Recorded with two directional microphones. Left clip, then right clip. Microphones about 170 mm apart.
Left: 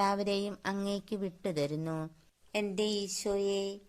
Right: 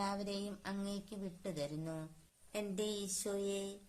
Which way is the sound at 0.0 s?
45° left (ahead or behind).